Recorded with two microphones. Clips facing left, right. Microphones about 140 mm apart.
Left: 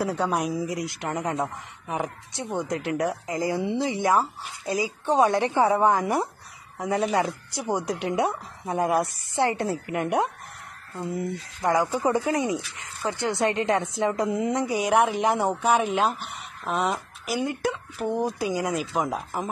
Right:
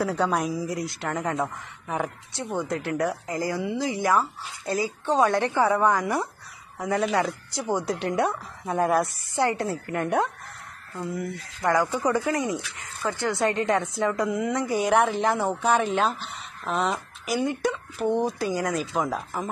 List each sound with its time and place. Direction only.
0.0 s speech: 5° left (ahead or behind)
0.5 s a man's voice: 20° left (ahead or behind)
11.0 s a man's voice: 25° left (ahead or behind)
14.7 s speech: 10° left (ahead or behind)